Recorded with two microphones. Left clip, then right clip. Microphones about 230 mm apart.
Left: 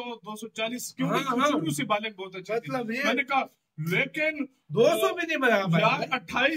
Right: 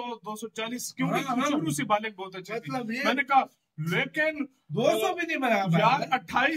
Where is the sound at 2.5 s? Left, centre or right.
Centre.